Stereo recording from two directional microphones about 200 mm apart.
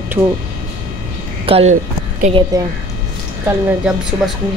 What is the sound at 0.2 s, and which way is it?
Speech, 15° right (ahead or behind).